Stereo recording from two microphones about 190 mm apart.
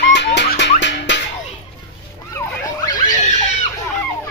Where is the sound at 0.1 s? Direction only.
65° left (ahead or behind).